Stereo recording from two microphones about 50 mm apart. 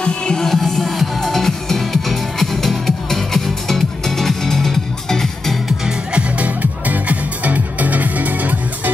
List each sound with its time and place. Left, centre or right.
0.0 s music: centre
5.9 s music: right